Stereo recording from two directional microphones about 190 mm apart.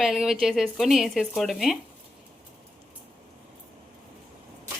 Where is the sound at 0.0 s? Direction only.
Centre (ahead or behind).